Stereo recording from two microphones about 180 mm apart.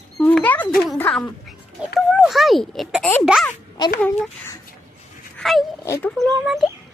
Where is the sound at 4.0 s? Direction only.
10° left (ahead or behind).